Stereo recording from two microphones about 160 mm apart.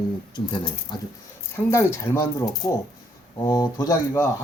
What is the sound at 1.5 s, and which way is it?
Speech, 15° left (ahead or behind).